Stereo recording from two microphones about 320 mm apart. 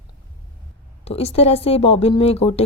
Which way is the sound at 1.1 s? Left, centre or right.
Centre.